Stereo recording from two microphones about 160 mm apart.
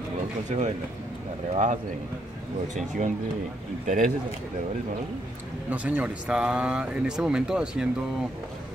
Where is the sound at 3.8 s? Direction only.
55° right (ahead or behind).